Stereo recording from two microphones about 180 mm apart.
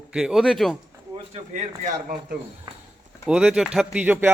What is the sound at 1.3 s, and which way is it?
Speech, 40° right (ahead or behind).